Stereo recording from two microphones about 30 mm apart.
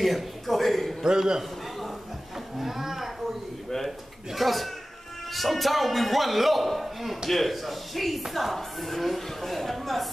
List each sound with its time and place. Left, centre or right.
0.0 s a man's voice: centre
1.0 s a man's voice: right
1.8 s livestock: centre
4.3 s a man's voice: centre